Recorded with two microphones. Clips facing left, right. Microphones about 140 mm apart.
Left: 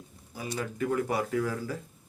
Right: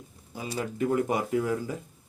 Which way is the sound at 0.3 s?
20° right (ahead or behind).